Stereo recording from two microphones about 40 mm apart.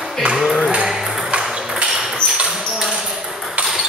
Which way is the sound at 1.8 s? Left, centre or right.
Centre.